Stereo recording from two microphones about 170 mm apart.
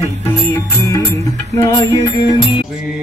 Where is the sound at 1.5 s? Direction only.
20° left (ahead or behind).